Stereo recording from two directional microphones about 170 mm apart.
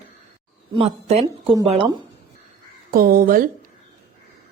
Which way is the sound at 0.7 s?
40° right (ahead or behind).